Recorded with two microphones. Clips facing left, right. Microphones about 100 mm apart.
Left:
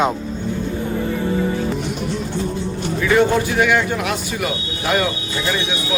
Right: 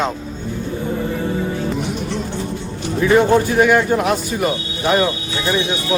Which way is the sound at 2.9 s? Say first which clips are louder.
Right 3 dB; 25° right (ahead or behind).